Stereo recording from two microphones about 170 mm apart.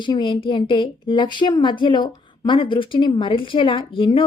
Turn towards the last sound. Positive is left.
turn(degrees=30)  # may be behind; listen again after turning